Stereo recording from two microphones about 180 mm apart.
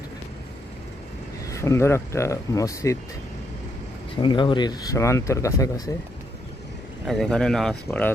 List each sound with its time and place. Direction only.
1.5 s speech: 15° left (ahead or behind)
4.2 s speech: 25° left (ahead or behind)
7.1 s speech: 5° left (ahead or behind)